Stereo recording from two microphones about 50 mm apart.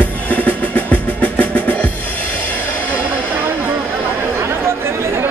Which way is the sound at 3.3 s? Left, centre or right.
Right.